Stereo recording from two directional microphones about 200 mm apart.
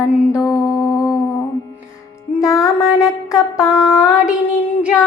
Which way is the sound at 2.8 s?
Centre (ahead or behind).